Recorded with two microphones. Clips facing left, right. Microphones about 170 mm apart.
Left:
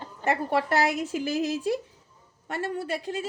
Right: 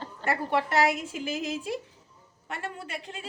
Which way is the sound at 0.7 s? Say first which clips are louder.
Left 1 dB; 35° left (ahead or behind).